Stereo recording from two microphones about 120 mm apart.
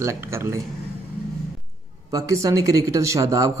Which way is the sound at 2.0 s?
30° right (ahead or behind).